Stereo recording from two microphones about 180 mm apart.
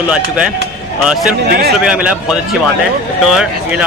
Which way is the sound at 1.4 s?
60° right (ahead or behind).